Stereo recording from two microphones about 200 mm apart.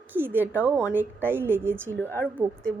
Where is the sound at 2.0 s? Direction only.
10° left (ahead or behind).